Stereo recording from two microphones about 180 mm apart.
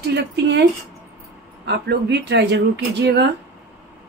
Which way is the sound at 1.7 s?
70° right (ahead or behind).